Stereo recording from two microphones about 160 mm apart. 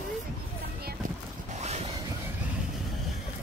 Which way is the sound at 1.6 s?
45° right (ahead or behind).